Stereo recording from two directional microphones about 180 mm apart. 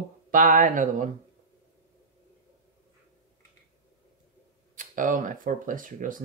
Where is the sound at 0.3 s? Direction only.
50° right (ahead or behind).